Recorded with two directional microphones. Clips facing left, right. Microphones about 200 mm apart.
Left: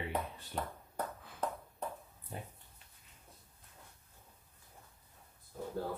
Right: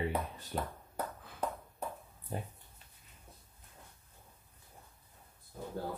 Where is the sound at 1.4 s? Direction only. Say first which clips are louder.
Right 1 dB; 10° right (ahead or behind).